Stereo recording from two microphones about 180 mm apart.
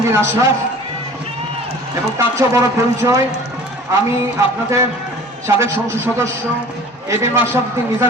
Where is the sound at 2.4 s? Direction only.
15° right (ahead or behind).